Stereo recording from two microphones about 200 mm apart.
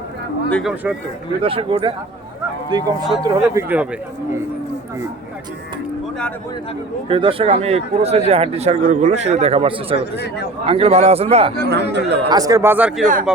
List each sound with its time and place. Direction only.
0.5 s speech: 5° right (ahead or behind)
1.4 s speech: 25° right (ahead or behind); by 3.8 s 10° right (ahead or behind)
7.1 s speech: 25° right (ahead or behind)
10.2 s speech: 55° left (ahead or behind)
10.7 s speech: 30° right (ahead or behind)
11.7 s speech: 60° right (ahead or behind)
12.3 s speech: 15° right (ahead or behind)